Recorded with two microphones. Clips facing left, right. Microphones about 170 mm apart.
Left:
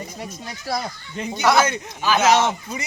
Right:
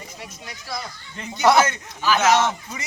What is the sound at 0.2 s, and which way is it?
Speech, 40° left (ahead or behind).